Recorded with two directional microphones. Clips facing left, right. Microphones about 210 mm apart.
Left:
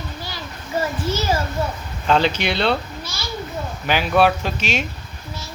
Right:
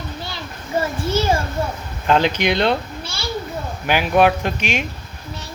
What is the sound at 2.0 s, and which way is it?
Speech, 15° right (ahead or behind).